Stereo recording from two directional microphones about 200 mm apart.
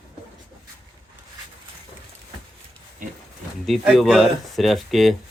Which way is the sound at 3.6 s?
Centre (ahead or behind).